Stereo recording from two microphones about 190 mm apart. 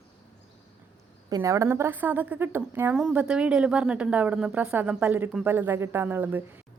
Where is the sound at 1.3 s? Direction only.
20° right (ahead or behind).